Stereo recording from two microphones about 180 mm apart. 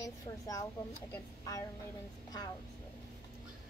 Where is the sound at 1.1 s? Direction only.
20° left (ahead or behind).